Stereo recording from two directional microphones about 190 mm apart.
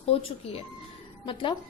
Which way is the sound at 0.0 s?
30° left (ahead or behind).